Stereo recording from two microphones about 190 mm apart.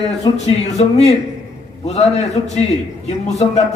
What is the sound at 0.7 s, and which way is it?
A man's voice, 35° left (ahead or behind).